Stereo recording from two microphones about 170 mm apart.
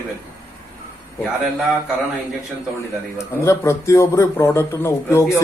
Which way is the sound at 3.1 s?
15° left (ahead or behind).